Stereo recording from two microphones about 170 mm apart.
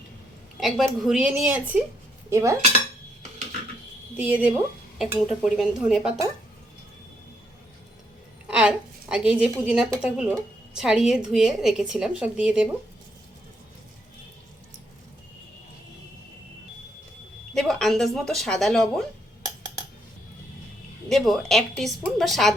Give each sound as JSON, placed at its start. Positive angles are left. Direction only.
{"t": 0.6, "sound": "a woman's voice", "side_deg": 0}
{"t": 4.2, "sound": "a woman's voice", "side_deg": -10}
{"t": 8.5, "sound": "a woman's voice", "side_deg": -5}
{"t": 17.5, "sound": "a woman's voice", "side_deg": 5}
{"t": 21.1, "sound": "a woman's voice", "side_deg": 0}